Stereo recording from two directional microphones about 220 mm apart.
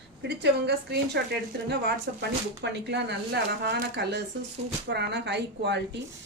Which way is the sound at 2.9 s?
50° right (ahead or behind).